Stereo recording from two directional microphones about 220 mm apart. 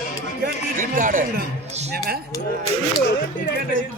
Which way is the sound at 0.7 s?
40° right (ahead or behind).